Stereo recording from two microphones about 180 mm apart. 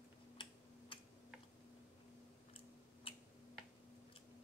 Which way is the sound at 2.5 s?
30° left (ahead or behind).